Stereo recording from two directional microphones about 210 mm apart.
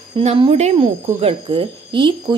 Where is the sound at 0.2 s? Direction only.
30° right (ahead or behind).